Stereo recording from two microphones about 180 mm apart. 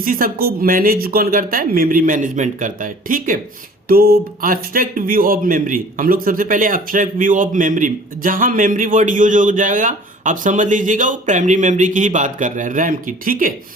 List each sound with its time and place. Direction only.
0.0 s speech: 50° right (ahead or behind)